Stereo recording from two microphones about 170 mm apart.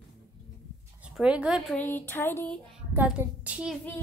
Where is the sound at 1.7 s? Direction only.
10° left (ahead or behind).